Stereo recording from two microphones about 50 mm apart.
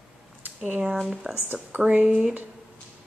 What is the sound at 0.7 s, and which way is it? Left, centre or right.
Speech, right.